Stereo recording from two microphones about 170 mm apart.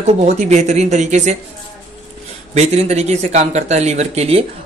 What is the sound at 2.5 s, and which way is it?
Speech, 40° right (ahead or behind).